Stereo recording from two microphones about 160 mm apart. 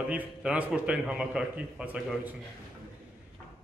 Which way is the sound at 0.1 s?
5° right (ahead or behind).